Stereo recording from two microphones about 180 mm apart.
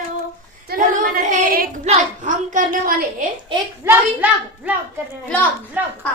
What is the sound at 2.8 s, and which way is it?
Speech, 50° right (ahead or behind).